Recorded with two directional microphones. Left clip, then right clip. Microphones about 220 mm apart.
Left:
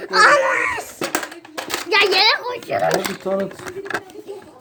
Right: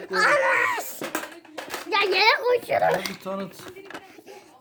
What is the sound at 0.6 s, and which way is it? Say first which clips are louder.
Speech: left 2 dB; 25° right (ahead or behind).